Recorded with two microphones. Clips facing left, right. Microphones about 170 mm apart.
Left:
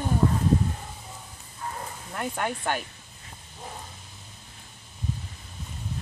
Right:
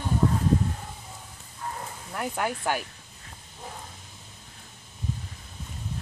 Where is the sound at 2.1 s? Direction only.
5° right (ahead or behind).